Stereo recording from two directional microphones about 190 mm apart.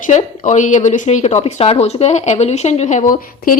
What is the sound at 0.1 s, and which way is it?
Speech, 40° left (ahead or behind).